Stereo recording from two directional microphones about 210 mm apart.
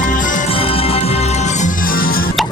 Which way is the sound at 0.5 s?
25° left (ahead or behind).